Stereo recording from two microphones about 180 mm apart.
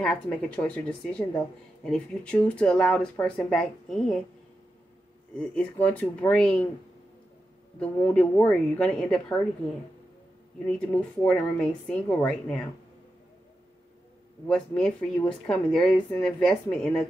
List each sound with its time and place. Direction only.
0.0 s speech: 5° left (ahead or behind)
5.3 s speech: 5° left (ahead or behind)
7.8 s speech: 5° left (ahead or behind)
10.7 s speech: 5° left (ahead or behind)
14.5 s speech: 5° left (ahead or behind)